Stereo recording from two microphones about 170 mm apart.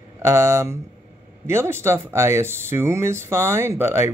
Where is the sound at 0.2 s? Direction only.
15° right (ahead or behind).